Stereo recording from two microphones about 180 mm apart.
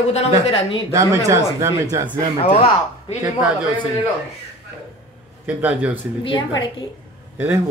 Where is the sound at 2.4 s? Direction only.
35° left (ahead or behind).